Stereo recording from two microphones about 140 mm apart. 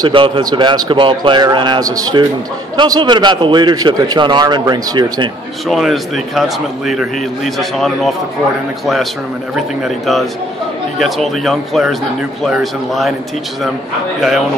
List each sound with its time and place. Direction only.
0.0 s a man's voice: 35° right (ahead or behind)
5.7 s a man's voice: centre (ahead or behind)
9.8 s a man's voice: centre (ahead or behind)